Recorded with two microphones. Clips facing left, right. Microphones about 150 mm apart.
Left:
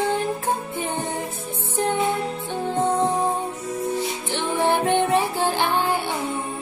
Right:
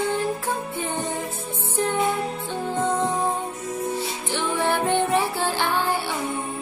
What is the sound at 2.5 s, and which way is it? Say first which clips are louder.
Music: left 3 dB; 15° left (ahead or behind).